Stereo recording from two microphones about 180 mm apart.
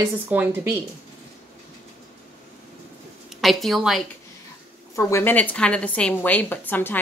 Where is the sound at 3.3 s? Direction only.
Centre (ahead or behind).